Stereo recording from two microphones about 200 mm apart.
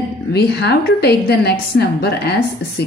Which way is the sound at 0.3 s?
55° left (ahead or behind).